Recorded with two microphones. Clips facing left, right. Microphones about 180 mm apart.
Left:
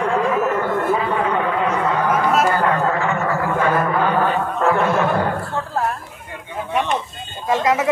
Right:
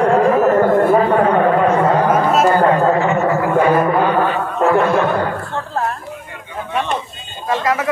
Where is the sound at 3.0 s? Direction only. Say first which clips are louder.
Right 5 dB; 20° right (ahead or behind).